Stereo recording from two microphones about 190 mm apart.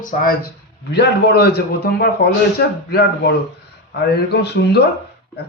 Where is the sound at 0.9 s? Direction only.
60° left (ahead or behind).